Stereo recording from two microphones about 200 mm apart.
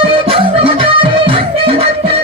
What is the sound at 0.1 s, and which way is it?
Music, 30° right (ahead or behind).